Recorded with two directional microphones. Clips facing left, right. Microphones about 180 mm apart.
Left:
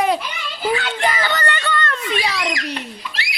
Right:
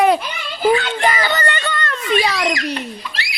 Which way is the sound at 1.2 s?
15° right (ahead or behind).